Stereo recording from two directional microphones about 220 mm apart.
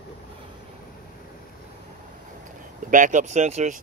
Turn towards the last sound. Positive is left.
turn(degrees=-30)  # may be behind; listen again after turning